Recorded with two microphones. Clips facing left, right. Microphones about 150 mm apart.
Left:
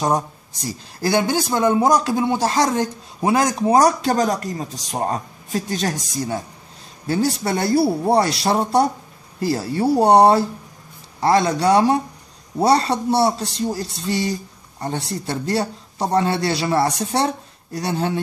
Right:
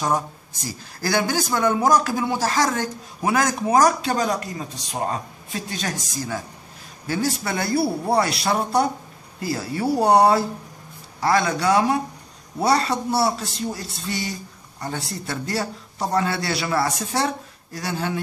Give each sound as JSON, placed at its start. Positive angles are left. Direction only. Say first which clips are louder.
{"t": 0.0, "sound": "speech", "louder": "left 3 dB", "side_deg": 30}